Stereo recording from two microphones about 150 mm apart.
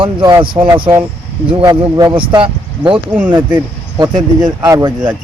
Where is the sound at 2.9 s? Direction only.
10° right (ahead or behind).